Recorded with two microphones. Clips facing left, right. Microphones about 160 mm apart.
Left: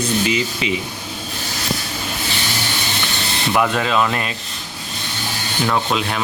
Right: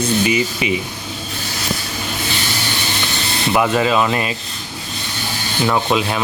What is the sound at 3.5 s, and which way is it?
Speech, 5° right (ahead or behind).